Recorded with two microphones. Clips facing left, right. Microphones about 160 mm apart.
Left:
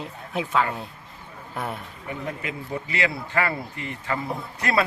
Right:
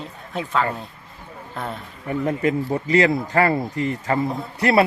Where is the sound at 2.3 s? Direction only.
45° right (ahead or behind).